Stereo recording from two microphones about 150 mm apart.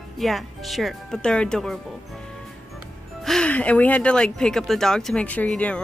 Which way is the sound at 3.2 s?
5° left (ahead or behind).